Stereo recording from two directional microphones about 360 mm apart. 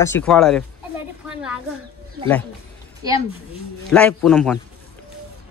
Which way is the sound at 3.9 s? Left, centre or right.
Centre.